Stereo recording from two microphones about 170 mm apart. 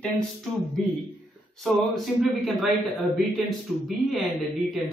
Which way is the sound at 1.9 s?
Centre (ahead or behind).